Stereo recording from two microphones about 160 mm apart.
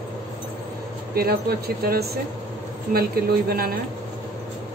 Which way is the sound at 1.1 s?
75° right (ahead or behind).